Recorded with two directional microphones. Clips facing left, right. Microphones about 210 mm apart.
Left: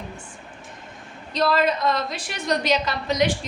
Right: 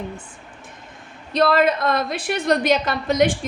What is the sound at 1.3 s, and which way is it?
A woman's voice, 55° right (ahead or behind).